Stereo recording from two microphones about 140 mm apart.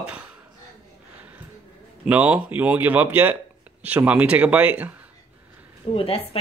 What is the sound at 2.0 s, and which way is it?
Speech, 10° right (ahead or behind).